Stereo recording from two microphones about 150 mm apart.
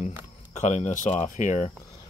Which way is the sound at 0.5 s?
50° left (ahead or behind).